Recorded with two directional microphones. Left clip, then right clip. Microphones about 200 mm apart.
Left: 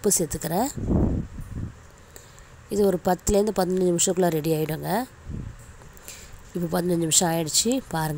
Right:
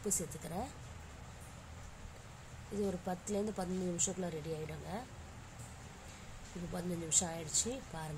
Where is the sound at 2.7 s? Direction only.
45° left (ahead or behind).